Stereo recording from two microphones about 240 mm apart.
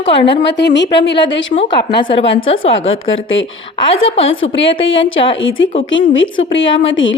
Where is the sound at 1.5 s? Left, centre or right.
Left.